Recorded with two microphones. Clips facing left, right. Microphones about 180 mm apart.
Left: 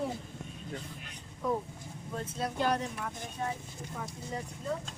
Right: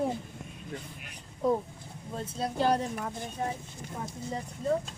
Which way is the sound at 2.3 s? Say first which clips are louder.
Right 4 dB; 35° right (ahead or behind).